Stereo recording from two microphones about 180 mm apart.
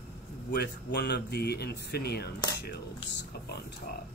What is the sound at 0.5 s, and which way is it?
Speech, 65° left (ahead or behind).